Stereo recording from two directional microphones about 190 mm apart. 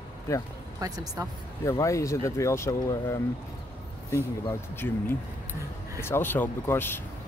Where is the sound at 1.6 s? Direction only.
15° left (ahead or behind).